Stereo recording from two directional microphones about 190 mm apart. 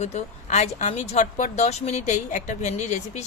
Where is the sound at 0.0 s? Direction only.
35° left (ahead or behind).